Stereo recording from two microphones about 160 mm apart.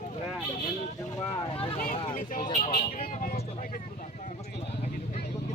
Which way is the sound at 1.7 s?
60° left (ahead or behind).